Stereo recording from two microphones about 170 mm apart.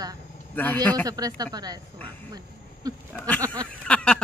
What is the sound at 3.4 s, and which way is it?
Speech, 25° right (ahead or behind).